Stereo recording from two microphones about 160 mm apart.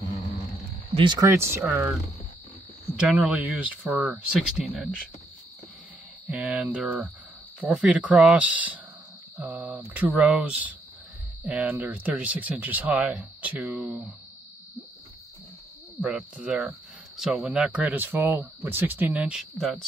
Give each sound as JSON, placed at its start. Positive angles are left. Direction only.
{"t": 0.9, "sound": "speech", "side_deg": -30}
{"t": 3.0, "sound": "speech", "side_deg": -5}
{"t": 6.2, "sound": "speech", "side_deg": -10}
{"t": 16.0, "sound": "speech", "side_deg": -5}